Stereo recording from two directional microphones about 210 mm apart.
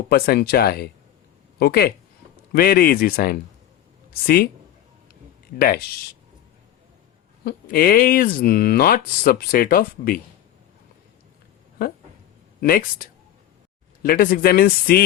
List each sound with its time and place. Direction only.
0.1 s speech: 50° left (ahead or behind)
5.5 s speech: 45° left (ahead or behind)
7.4 s speech: 45° left (ahead or behind)
12.5 s speech: 45° left (ahead or behind)